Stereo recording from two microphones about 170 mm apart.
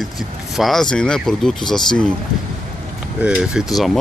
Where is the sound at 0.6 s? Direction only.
Centre (ahead or behind).